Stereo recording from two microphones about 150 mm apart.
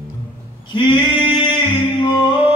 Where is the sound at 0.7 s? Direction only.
30° left (ahead or behind).